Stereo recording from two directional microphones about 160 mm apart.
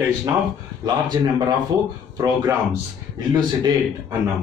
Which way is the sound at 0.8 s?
25° right (ahead or behind).